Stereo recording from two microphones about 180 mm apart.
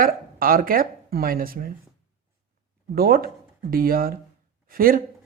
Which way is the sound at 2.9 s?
55° right (ahead or behind).